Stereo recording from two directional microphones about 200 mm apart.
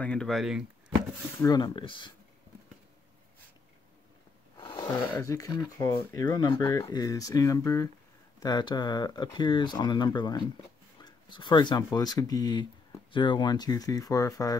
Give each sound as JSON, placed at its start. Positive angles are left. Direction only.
{"t": 0.0, "sound": "speech", "side_deg": 5}
{"t": 1.4, "sound": "speech", "side_deg": 20}
{"t": 4.6, "sound": "speech", "side_deg": 20}